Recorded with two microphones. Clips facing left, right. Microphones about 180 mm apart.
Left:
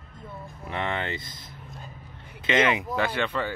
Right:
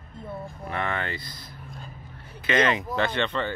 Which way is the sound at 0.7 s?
20° left (ahead or behind).